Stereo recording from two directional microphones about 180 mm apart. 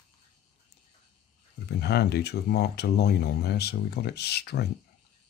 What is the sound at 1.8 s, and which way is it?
Speech, 65° left (ahead or behind).